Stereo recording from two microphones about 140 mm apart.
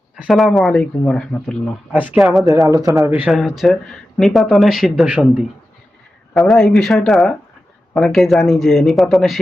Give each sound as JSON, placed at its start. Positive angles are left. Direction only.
{"t": 0.2, "sound": "speech", "side_deg": 0}
{"t": 1.9, "sound": "speech", "side_deg": -5}
{"t": 2.4, "sound": "speech", "side_deg": -20}
{"t": 3.1, "sound": "speech", "side_deg": -5}
{"t": 6.3, "sound": "speech", "side_deg": 0}